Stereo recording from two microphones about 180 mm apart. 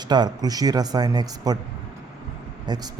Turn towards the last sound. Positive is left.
turn(degrees=-20)  # may be behind; listen again after turning